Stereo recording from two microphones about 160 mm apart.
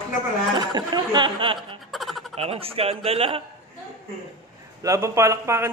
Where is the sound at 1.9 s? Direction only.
Centre (ahead or behind).